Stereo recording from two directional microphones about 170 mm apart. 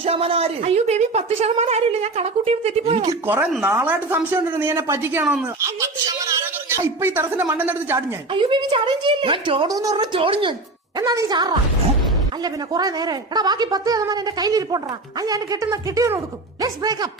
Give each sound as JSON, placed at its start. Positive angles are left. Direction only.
{"t": 0.0, "sound": "a woman's voice", "side_deg": -35}
{"t": 3.1, "sound": "a woman's voice", "side_deg": -10}
{"t": 6.1, "sound": "a man's voice", "side_deg": -20}
{"t": 8.3, "sound": "a woman's voice", "side_deg": -30}